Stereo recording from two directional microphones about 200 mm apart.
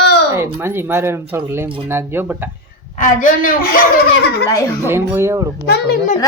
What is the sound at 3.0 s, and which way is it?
Speech, 45° left (ahead or behind).